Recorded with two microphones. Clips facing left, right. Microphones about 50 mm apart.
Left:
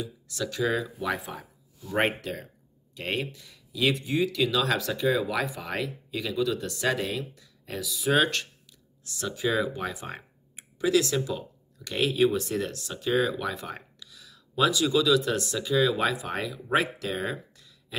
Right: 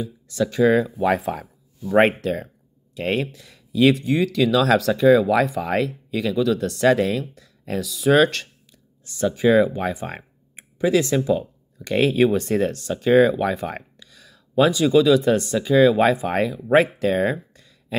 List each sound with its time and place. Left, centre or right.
0.0 s speech: right
1.0 s speech: right
9.1 s speech: right